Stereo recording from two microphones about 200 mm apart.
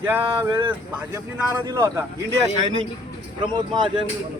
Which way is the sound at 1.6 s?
15° right (ahead or behind).